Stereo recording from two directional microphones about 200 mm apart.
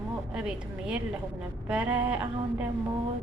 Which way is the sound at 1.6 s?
5° right (ahead or behind).